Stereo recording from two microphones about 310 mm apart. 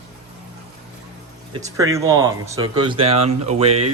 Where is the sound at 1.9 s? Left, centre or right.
Centre.